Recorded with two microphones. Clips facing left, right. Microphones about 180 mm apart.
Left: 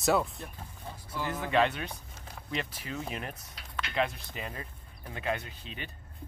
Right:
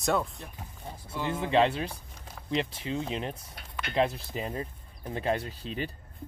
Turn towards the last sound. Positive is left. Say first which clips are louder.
# right 8 dB
turn(degrees=-35)  # may be behind; listen again after turning